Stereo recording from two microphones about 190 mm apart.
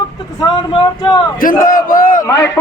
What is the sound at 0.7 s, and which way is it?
Speech, 25° left (ahead or behind).